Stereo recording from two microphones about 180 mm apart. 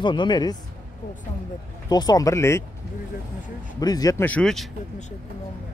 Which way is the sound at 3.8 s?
20° left (ahead or behind).